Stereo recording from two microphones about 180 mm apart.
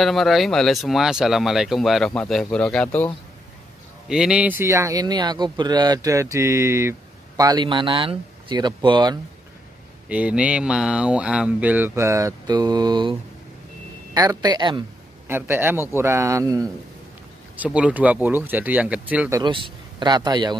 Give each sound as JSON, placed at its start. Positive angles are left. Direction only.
{"t": 0.0, "sound": "speech", "side_deg": 0}
{"t": 4.1, "sound": "speech", "side_deg": -5}
{"t": 10.0, "sound": "speech", "side_deg": -5}
{"t": 14.1, "sound": "speech", "side_deg": -20}
{"t": 15.2, "sound": "speech", "side_deg": -10}
{"t": 17.6, "sound": "speech", "side_deg": -5}
{"t": 19.4, "sound": "a man's voice", "side_deg": -25}